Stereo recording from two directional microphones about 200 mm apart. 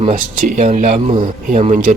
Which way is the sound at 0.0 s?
35° right (ahead or behind).